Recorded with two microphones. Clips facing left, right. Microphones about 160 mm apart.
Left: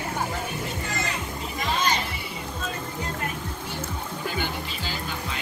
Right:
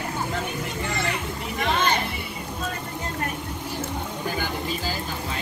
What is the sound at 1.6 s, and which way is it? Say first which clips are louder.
Music: right 3 dB; 60° right (ahead or behind).